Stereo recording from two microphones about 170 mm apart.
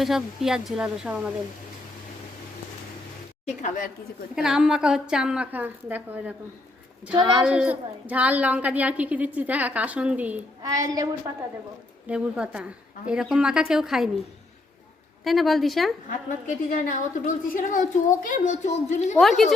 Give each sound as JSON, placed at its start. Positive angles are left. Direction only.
{"t": 0.0, "sound": "a woman's voice", "side_deg": 0}
{"t": 3.4, "sound": "a woman's voice", "side_deg": 45}
{"t": 4.4, "sound": "a woman's voice", "side_deg": -5}
{"t": 10.6, "sound": "a woman's voice", "side_deg": -20}
{"t": 12.0, "sound": "a woman's voice", "side_deg": -5}
{"t": 15.2, "sound": "a woman's voice", "side_deg": 0}
{"t": 16.0, "sound": "a woman's voice", "side_deg": 45}
{"t": 19.2, "sound": "a woman's voice", "side_deg": 0}